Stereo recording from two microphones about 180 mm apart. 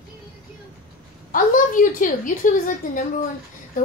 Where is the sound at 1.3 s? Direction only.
50° left (ahead or behind).